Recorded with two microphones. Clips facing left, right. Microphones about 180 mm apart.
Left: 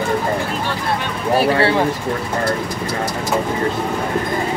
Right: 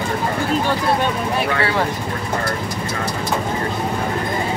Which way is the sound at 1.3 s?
35° left (ahead or behind).